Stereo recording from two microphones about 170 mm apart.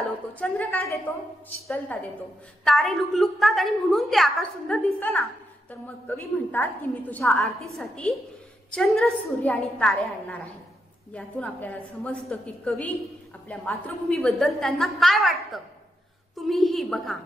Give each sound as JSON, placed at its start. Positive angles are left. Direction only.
{"t": 0.3, "sound": "a woman's voice", "side_deg": 10}
{"t": 2.6, "sound": "a woman's voice", "side_deg": 0}